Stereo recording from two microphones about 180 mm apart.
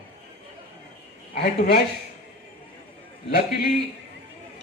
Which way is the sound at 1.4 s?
60° left (ahead or behind).